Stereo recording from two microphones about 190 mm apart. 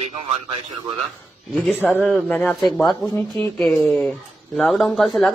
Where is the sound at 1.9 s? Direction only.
Centre (ahead or behind).